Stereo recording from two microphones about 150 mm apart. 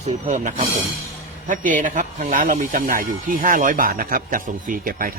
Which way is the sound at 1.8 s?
55° right (ahead or behind).